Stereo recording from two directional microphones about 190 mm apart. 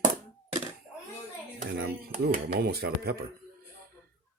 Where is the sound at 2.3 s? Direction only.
55° right (ahead or behind).